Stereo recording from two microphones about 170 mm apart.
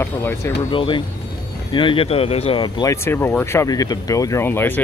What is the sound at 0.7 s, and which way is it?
Speech, 30° left (ahead or behind).